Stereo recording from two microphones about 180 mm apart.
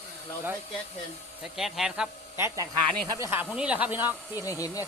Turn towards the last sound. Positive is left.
turn(degrees=20)  # may be behind; listen again after turning